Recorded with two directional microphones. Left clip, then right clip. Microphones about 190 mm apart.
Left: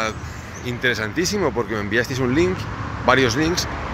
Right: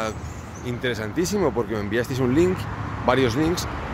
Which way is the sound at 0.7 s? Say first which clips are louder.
Left 5 dB; 10° right (ahead or behind).